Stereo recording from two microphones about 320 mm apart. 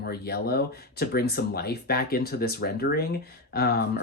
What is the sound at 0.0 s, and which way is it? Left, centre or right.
Speech, left.